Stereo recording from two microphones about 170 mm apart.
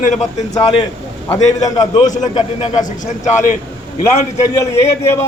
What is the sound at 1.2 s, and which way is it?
A man's voice, 20° left (ahead or behind).